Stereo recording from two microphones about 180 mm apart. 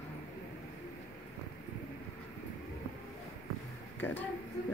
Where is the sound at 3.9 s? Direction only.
10° left (ahead or behind).